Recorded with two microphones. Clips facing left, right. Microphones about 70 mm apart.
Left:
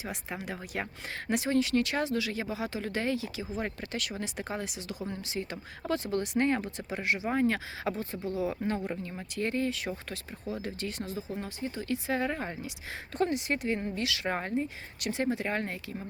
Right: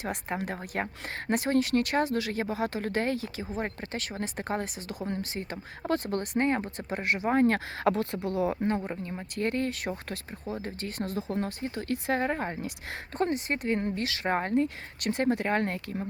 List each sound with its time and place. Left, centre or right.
0.0 s speech: right
7.9 s speech: right
10.5 s speech: right
11.4 s speech: right
14.0 s speech: right
14.5 s speech: right